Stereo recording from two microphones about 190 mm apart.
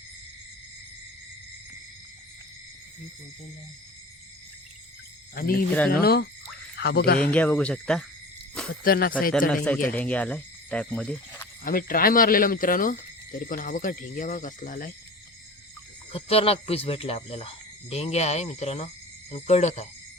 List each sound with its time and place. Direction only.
5.3 s speech: 50° left (ahead or behind)
7.3 s speech: 5° left (ahead or behind)
8.8 s speech: 50° left (ahead or behind)
9.5 s a man's voice: 5° left (ahead or behind)
11.6 s speech: 50° left (ahead or behind)
16.1 s speech: 30° left (ahead or behind)